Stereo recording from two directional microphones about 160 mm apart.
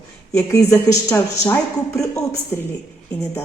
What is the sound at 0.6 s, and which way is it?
A woman's voice, 10° left (ahead or behind).